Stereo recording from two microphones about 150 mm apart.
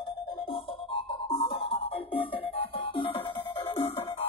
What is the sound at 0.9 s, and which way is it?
Music, 35° left (ahead or behind).